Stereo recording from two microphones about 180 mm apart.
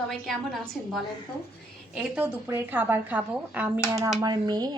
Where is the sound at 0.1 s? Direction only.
Centre (ahead or behind).